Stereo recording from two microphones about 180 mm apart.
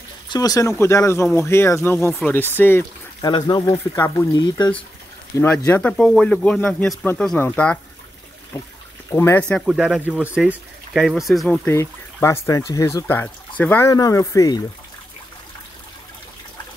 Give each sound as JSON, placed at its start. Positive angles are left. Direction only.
{"t": 0.3, "sound": "speech", "side_deg": 20}
{"t": 3.3, "sound": "speech", "side_deg": 25}
{"t": 5.7, "sound": "speech", "side_deg": 5}
{"t": 9.1, "sound": "speech", "side_deg": 10}
{"t": 9.7, "sound": "speech", "side_deg": -5}